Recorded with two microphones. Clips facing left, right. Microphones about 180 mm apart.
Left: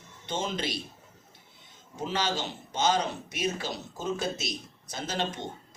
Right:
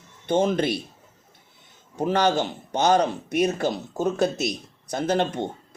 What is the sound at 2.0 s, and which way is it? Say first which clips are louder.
Speech: right 9 dB; 60° right (ahead or behind).